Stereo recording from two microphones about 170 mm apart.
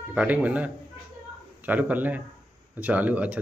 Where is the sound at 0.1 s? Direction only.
10° right (ahead or behind).